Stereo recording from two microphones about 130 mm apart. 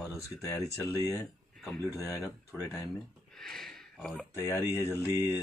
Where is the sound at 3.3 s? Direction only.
5° left (ahead or behind).